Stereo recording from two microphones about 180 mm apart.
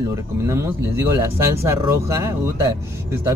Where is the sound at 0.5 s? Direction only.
15° right (ahead or behind).